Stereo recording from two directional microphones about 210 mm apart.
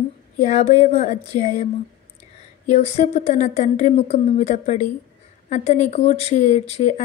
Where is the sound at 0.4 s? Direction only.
30° left (ahead or behind).